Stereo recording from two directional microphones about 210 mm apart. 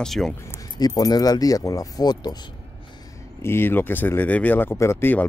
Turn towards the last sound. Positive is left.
turn(degrees=10)  # may be behind; listen again after turning